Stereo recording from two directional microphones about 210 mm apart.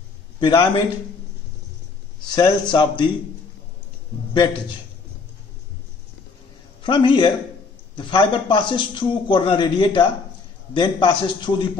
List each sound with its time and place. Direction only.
0.4 s a man's voice: 20° left (ahead or behind)
2.3 s a man's voice: 20° left (ahead or behind)
4.3 s a man's voice: 20° left (ahead or behind)
6.8 s a man's voice: 25° left (ahead or behind)